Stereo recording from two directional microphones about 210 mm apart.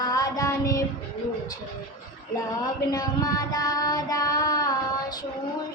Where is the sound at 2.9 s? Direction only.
15° left (ahead or behind).